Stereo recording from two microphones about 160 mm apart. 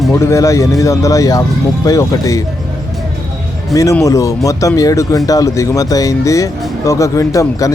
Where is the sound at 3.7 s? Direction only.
20° left (ahead or behind).